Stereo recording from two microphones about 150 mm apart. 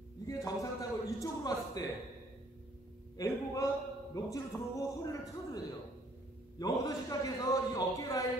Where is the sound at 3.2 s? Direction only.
20° left (ahead or behind).